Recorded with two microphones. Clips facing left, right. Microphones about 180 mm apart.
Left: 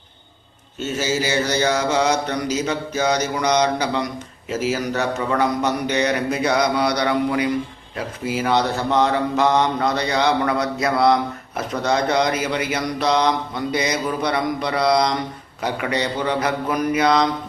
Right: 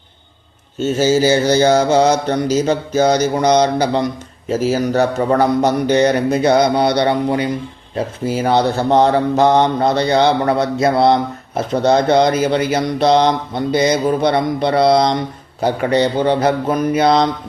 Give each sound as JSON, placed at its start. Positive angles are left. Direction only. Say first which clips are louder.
{"t": 0.8, "sound": "speech", "louder": "right 9 dB", "side_deg": -30}